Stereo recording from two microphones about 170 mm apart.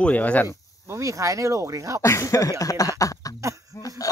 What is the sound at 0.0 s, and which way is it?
Speech, 10° left (ahead or behind).